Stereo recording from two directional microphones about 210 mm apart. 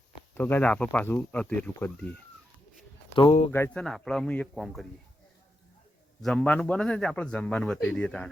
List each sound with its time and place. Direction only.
0.3 s speech: 10° left (ahead or behind)
3.5 s a man's voice: 10° left (ahead or behind)
6.2 s a man's voice: 5° left (ahead or behind)